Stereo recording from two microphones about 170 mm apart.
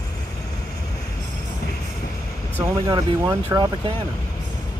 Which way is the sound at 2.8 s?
25° right (ahead or behind).